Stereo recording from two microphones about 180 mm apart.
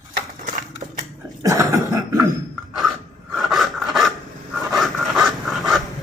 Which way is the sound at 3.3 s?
Centre (ahead or behind).